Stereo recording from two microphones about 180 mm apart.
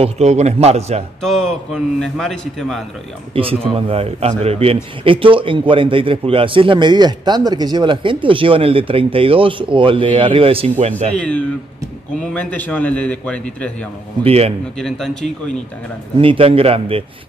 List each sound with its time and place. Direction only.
0.0 s a man's voice: 40° right (ahead or behind)
1.2 s a man's voice: centre (ahead or behind)
3.7 s a man's voice: 30° right (ahead or behind)
11.1 s a man's voice: 5° left (ahead or behind)
14.2 s a man's voice: 35° right (ahead or behind)
14.8 s a man's voice: 5° left (ahead or behind)
16.2 s a man's voice: 30° right (ahead or behind)